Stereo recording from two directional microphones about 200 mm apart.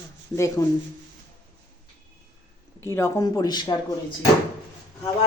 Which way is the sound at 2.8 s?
15° left (ahead or behind).